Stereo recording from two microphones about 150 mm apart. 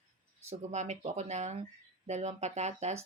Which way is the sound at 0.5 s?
50° right (ahead or behind).